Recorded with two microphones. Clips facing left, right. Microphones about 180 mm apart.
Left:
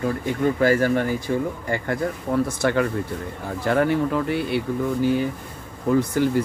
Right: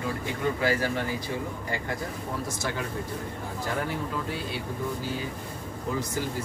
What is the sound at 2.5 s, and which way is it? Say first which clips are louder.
Speech: left 10 dB; 60° left (ahead or behind).